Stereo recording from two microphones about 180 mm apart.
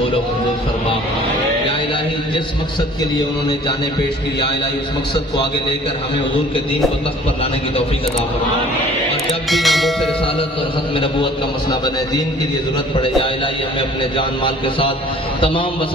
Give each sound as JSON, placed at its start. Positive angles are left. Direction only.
{"t": 9.5, "sound": "music", "side_deg": 0}
{"t": 12.9, "sound": "a man's voice", "side_deg": 30}